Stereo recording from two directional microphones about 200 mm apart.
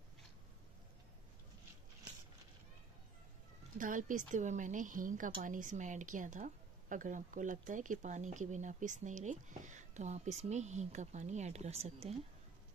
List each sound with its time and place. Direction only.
3.7 s a woman's voice: 40° right (ahead or behind)